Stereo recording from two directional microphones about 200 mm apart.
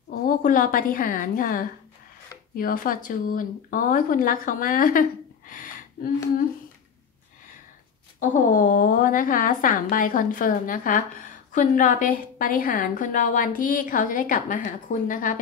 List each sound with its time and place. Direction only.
0.1 s a woman's voice: 45° left (ahead or behind)
5.5 s a sound: 45° left (ahead or behind)
8.2 s a woman's voice: 45° left (ahead or behind)